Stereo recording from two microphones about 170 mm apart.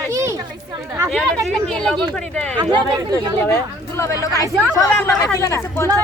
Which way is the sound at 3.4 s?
15° left (ahead or behind).